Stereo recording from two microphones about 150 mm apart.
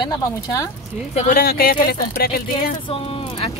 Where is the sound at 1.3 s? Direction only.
90° left.